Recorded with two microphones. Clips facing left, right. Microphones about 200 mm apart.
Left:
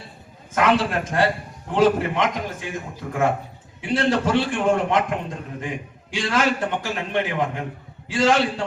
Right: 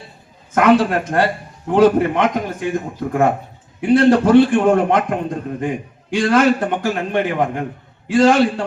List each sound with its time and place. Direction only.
0.5 s a man's voice: 55° right (ahead or behind)